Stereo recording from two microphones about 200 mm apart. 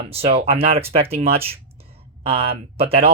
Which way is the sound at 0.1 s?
30° right (ahead or behind).